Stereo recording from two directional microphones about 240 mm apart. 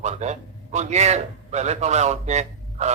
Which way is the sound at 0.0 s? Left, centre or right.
Right.